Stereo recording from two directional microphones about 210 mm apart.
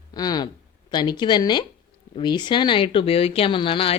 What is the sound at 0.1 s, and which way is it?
Speech, 20° left (ahead or behind).